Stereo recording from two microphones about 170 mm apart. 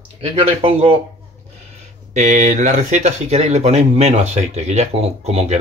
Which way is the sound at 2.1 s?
45° right (ahead or behind).